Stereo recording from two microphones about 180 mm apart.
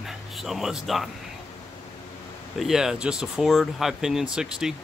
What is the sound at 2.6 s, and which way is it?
Speech, centre (ahead or behind).